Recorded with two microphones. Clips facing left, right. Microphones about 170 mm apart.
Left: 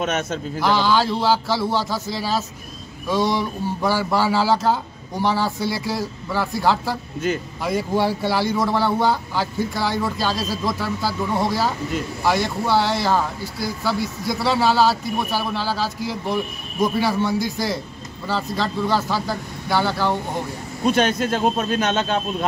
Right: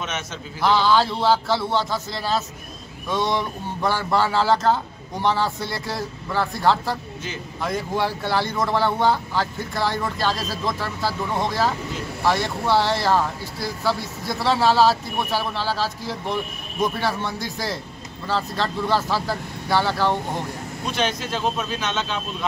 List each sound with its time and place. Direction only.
0.0 s speech: 50° left (ahead or behind)
0.6 s speech: centre (ahead or behind)
20.8 s speech: 55° left (ahead or behind)